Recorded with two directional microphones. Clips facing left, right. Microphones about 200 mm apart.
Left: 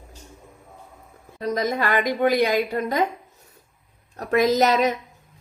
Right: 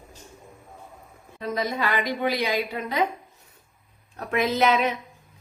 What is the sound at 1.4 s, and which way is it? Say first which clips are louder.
Speech: left 4 dB; 45° left (ahead or behind).